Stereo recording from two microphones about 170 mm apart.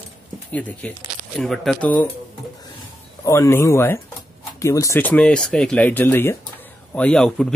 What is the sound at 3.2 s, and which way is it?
Speech, 15° left (ahead or behind).